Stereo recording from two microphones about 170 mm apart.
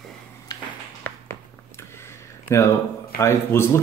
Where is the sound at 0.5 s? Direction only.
20° left (ahead or behind).